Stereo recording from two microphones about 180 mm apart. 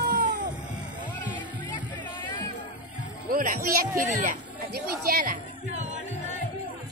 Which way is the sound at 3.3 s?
50° right (ahead or behind).